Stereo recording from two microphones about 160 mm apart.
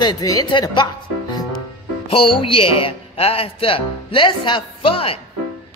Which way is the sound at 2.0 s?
35° left (ahead or behind).